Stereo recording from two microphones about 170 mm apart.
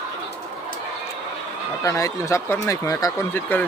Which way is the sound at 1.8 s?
15° left (ahead or behind).